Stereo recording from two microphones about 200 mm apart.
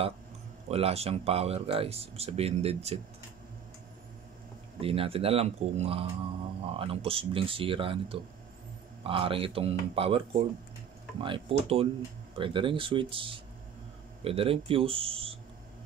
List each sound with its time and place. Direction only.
0.7 s speech: 30° right (ahead or behind)
4.7 s speech: 30° right (ahead or behind)